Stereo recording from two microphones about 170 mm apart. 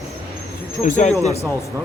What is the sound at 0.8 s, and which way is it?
Speech, 45° left (ahead or behind).